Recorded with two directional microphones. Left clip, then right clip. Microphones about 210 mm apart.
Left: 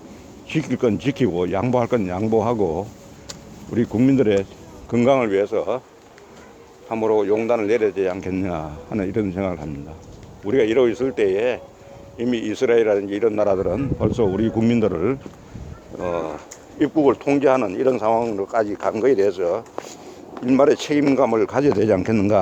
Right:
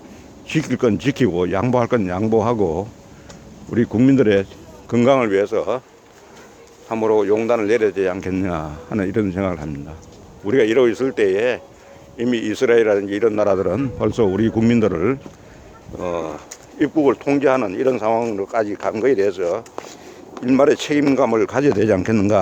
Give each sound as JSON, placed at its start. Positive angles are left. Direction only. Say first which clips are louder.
{"t": 0.4, "sound": "speech", "louder": "right 2 dB", "side_deg": -15}
{"t": 6.8, "sound": "speech", "louder": "right 2 dB", "side_deg": -20}